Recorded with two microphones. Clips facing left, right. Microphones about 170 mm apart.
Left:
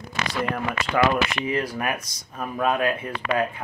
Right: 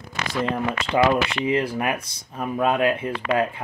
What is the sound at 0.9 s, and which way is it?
Speech, 25° right (ahead or behind).